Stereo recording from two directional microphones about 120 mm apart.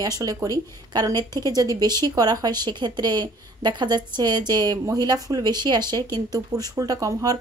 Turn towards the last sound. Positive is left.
turn(degrees=-30)  # may be behind; listen again after turning